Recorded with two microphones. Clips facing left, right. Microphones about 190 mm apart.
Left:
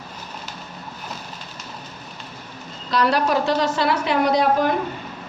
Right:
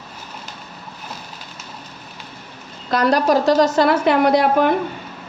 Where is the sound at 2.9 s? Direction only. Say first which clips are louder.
Right 4 dB; 45° right (ahead or behind).